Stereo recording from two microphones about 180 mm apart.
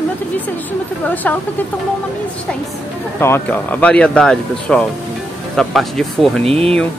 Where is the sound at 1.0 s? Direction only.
10° left (ahead or behind).